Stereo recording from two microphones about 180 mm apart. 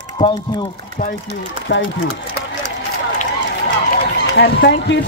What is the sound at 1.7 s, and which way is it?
Speech, 90° left.